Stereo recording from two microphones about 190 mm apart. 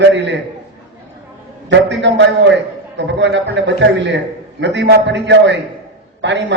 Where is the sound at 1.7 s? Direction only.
70° right (ahead or behind).